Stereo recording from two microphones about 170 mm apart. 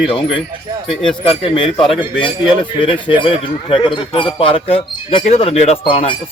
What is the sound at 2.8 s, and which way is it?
Speech, 30° left (ahead or behind).